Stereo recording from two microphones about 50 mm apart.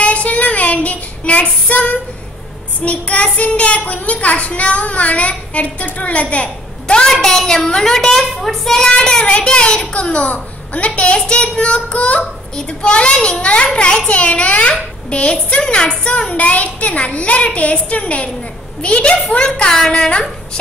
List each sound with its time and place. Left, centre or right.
0.0 s child singing: left
2.8 s a child's voice: left
7.1 s a child's voice: centre
9.2 s a child's voice: left
11.1 s a child's voice: centre